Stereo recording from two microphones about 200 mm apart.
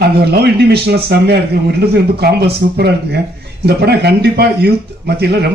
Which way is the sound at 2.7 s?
55° right (ahead or behind).